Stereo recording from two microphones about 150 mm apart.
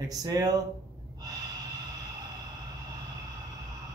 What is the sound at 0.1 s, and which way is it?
Speech, 25° right (ahead or behind).